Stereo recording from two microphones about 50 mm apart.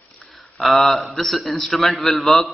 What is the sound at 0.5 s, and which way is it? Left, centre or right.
Speech, centre.